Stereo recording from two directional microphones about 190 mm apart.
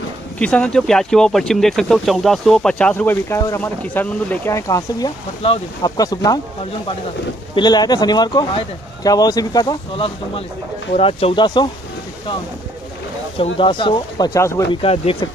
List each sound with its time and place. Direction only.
0.4 s speech: 5° left (ahead or behind)
7.5 s speech: 20° left (ahead or behind)
13.6 s speech: 25° left (ahead or behind)
14.8 s speech: 30° left (ahead or behind)